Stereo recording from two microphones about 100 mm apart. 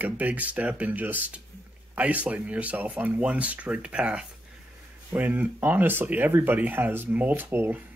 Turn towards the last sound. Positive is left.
turn(degrees=-20)  # may be behind; listen again after turning